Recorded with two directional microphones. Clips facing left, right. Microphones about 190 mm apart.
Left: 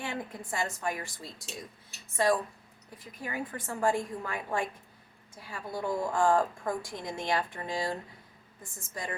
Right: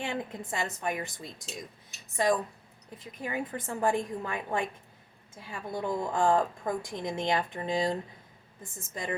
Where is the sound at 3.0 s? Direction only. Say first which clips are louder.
Right 2 dB; 20° right (ahead or behind).